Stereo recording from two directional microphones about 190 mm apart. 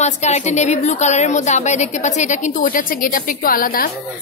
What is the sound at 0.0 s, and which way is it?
A woman's voice, 35° left (ahead or behind).